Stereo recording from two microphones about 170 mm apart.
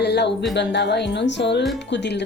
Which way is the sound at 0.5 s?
85° left.